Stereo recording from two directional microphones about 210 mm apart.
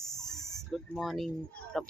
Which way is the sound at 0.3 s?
15° left (ahead or behind).